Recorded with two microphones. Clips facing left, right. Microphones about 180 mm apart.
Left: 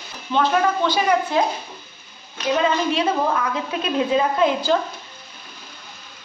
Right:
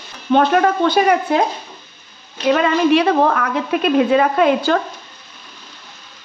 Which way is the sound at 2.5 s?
70° right (ahead or behind).